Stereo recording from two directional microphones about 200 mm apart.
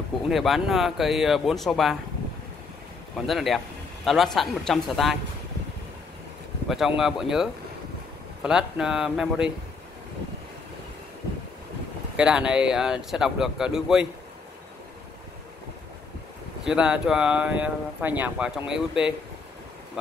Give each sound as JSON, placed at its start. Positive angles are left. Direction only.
{"t": 0.3, "sound": "speech", "side_deg": 0}
{"t": 3.2, "sound": "a man's voice", "side_deg": 0}
{"t": 6.7, "sound": "speech", "side_deg": 0}
{"t": 12.2, "sound": "speech", "side_deg": -5}
{"t": 16.6, "sound": "speech", "side_deg": -5}